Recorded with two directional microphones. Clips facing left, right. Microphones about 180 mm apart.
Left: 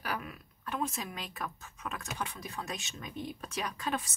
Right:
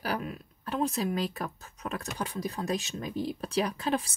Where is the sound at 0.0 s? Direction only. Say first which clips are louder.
Right 5 dB; 35° right (ahead or behind).